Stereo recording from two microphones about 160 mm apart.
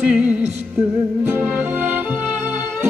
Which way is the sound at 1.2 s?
15° right (ahead or behind).